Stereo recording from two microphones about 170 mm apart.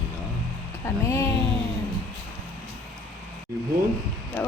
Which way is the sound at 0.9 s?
15° left (ahead or behind).